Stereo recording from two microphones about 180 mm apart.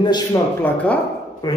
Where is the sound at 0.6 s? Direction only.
10° left (ahead or behind).